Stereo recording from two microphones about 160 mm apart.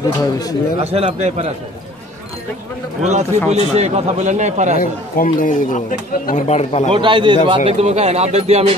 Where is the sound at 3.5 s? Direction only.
40° right (ahead or behind).